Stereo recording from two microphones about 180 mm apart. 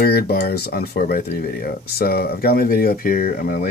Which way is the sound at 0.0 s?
60° left (ahead or behind).